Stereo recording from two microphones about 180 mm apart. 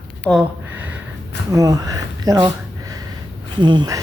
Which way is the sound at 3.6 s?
25° right (ahead or behind).